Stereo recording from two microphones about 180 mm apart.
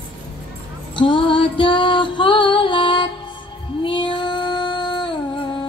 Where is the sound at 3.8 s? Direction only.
25° left (ahead or behind).